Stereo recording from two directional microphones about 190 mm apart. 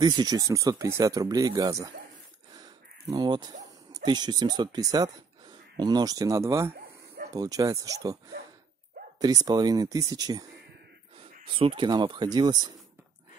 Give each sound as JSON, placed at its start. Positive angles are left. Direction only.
{"t": 0.0, "sound": "speech", "side_deg": -20}
{"t": 2.5, "sound": "a sound", "side_deg": -20}
{"t": 3.9, "sound": "speech", "side_deg": -20}
{"t": 9.2, "sound": "speech", "side_deg": -20}
{"t": 11.4, "sound": "speech", "side_deg": -30}